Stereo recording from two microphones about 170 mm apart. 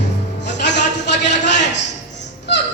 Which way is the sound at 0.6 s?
90° left.